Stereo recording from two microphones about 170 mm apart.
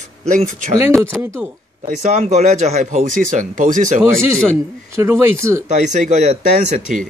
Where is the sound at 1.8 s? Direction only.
50° right (ahead or behind).